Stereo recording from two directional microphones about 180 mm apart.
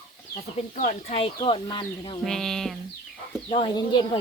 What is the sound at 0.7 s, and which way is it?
Speech, 45° left (ahead or behind).